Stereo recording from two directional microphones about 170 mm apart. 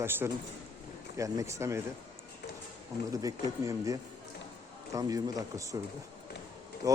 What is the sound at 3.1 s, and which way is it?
Speech, 20° right (ahead or behind).